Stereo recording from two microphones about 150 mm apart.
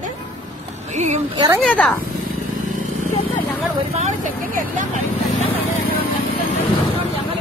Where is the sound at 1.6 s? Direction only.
5° left (ahead or behind).